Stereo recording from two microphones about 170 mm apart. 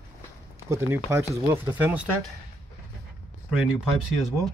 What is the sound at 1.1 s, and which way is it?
Speech, 15° right (ahead or behind).